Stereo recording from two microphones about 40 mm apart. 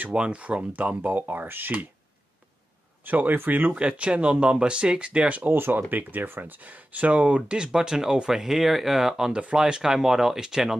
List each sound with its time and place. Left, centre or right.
0.1 s speech: right
3.1 s speech: right
3.7 s speech: right
5.5 s speech: right; by 8.3 s centre
8.3 s speech: centre
9.3 s speech: right; by 10.8 s centre